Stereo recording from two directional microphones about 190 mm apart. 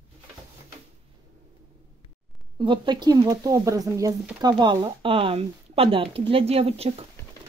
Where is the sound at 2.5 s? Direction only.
25° right (ahead or behind).